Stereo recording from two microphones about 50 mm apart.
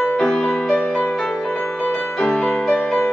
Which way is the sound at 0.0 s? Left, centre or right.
Centre.